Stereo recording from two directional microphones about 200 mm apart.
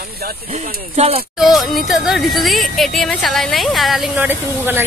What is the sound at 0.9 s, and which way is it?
Speech, 30° right (ahead or behind).